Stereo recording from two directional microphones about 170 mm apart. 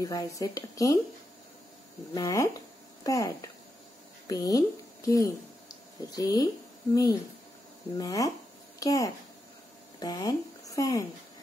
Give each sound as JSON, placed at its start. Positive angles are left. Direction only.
{"t": 0.0, "sound": "speech", "side_deg": 20}
{"t": 2.1, "sound": "a woman's voice", "side_deg": 20}